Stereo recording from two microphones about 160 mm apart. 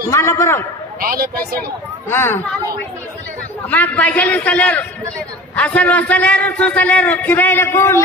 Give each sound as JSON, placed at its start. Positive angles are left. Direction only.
{"t": 0.1, "sound": "a man's voice", "side_deg": 20}
{"t": 1.0, "sound": "a woman's voice", "side_deg": -65}
{"t": 2.0, "sound": "a man's voice", "side_deg": 15}
{"t": 3.7, "sound": "a man's voice", "side_deg": 10}